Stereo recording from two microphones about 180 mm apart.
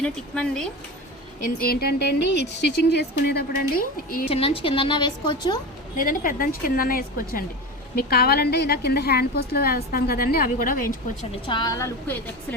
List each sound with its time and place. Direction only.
0.0 s speech: 5° left (ahead or behind)
1.5 s a woman's voice: 55° left (ahead or behind)
4.3 s a woman's voice: 30° left (ahead or behind)
6.1 s a woman's voice: 50° left (ahead or behind)
11.4 s a woman's voice: 25° left (ahead or behind)